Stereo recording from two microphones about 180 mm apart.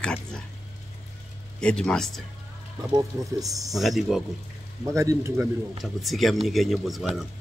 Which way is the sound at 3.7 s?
Centre (ahead or behind).